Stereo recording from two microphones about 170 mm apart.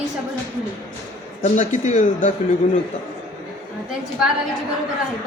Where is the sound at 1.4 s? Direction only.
45° left (ahead or behind).